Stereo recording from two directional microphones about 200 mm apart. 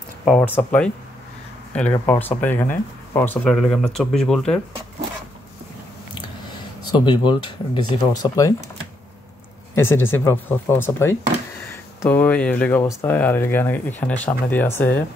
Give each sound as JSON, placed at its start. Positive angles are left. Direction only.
{"t": 0.2, "sound": "speech", "side_deg": 5}
{"t": 7.1, "sound": "speech", "side_deg": 20}
{"t": 9.8, "sound": "speech", "side_deg": 10}